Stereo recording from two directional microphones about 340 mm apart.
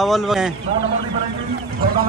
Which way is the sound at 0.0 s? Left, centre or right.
Centre.